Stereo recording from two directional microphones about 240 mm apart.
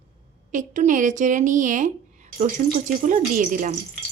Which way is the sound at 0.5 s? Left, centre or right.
Right.